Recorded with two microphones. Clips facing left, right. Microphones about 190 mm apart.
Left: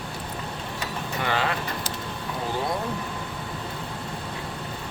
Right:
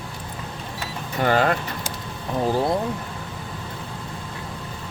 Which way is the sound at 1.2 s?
45° right (ahead or behind).